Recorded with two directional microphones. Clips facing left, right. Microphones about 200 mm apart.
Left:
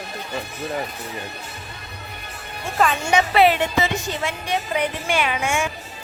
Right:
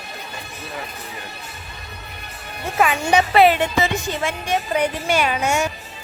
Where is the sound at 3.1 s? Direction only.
40° right (ahead or behind).